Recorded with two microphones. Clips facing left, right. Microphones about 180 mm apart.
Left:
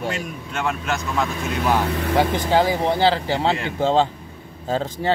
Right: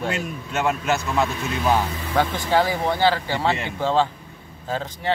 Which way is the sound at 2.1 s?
15° left (ahead or behind).